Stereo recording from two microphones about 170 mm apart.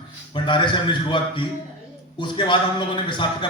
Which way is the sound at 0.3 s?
30° left (ahead or behind).